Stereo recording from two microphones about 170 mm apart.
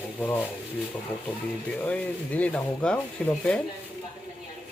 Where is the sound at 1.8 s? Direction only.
10° left (ahead or behind).